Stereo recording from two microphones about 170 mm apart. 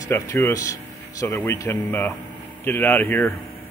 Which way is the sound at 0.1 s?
15° left (ahead or behind).